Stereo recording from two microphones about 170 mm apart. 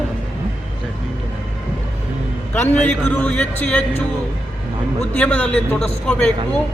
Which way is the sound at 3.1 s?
10° left (ahead or behind).